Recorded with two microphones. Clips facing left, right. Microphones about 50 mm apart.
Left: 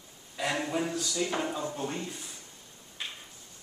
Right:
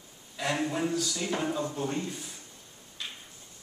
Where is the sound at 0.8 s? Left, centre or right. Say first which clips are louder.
Right 1 dB; centre.